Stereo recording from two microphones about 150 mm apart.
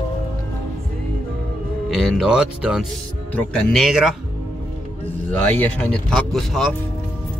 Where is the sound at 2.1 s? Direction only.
5° right (ahead or behind).